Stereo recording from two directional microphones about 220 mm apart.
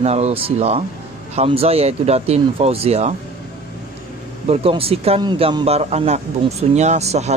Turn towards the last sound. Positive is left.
turn(degrees=-30)  # may be behind; listen again after turning